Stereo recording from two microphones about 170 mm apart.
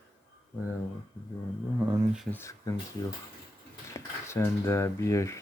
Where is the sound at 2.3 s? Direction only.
15° left (ahead or behind).